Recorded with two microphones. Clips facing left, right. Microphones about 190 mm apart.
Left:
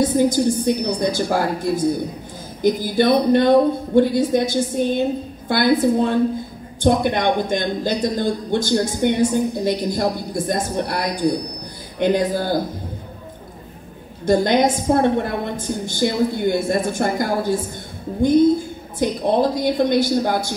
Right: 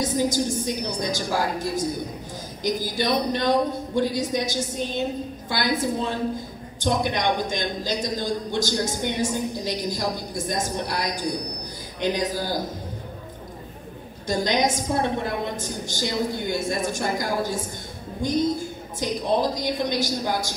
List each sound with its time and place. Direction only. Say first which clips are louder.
0.0 s a woman's voice: left 7 dB; 55° left (ahead or behind)
14.2 s a woman's voice: left 7 dB; 55° left (ahead or behind)
18.9 s a woman's voice: left 5 dB; 55° left (ahead or behind)